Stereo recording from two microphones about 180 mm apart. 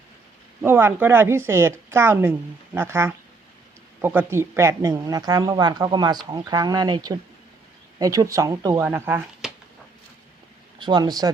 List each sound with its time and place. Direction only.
0.6 s a woman's voice: 10° right (ahead or behind)
10.8 s speech: 25° right (ahead or behind)